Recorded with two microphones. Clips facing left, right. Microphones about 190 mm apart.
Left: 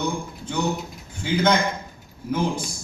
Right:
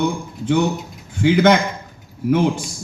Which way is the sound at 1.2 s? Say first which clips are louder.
Right 8 dB; 70° right (ahead or behind).